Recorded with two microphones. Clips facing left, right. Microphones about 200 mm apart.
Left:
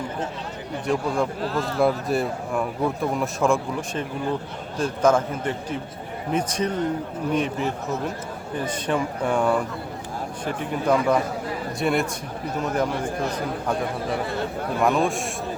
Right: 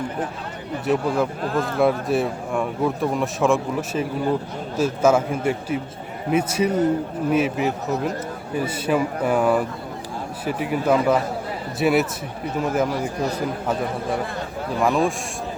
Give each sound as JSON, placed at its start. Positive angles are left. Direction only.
{"t": 0.9, "sound": "speech", "side_deg": -5}
{"t": 1.4, "sound": "speech", "side_deg": -50}
{"t": 1.8, "sound": "a man's voice", "side_deg": 0}
{"t": 14.8, "sound": "speech", "side_deg": 0}